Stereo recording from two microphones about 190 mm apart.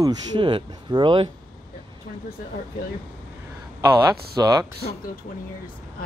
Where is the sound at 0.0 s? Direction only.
25° right (ahead or behind).